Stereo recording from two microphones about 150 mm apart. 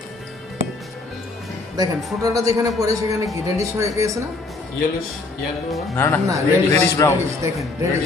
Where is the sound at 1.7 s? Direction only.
25° right (ahead or behind).